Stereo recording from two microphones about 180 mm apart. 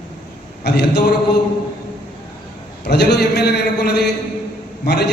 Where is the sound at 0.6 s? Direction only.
65° left (ahead or behind).